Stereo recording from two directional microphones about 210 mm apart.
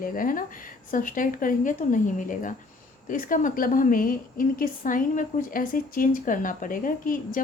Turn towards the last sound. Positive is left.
turn(degrees=40)  # may be behind; listen again after turning